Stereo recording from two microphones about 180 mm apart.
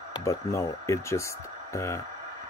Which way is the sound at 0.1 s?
15° left (ahead or behind).